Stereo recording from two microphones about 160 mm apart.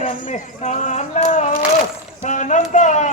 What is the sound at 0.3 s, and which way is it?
Speech, 50° left (ahead or behind).